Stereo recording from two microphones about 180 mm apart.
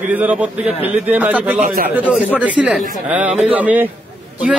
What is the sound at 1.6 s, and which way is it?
Speech, 50° right (ahead or behind).